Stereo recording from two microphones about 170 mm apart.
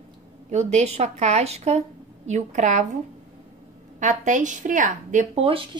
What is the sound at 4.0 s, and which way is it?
A woman's voice, 45° right (ahead or behind).